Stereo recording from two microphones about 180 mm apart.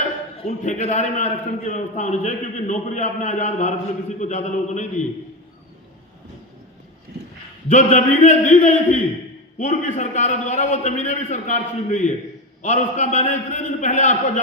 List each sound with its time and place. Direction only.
0.4 s a man's voice: 40° left (ahead or behind)
7.1 s a sound: 65° right (ahead or behind)
7.7 s a man's voice: 40° left (ahead or behind)